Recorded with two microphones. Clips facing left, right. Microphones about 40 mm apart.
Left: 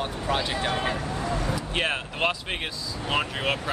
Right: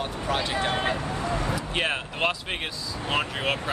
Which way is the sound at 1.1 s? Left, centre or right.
Right.